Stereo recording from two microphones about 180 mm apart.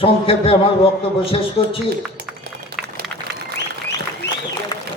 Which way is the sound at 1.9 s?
60° right (ahead or behind).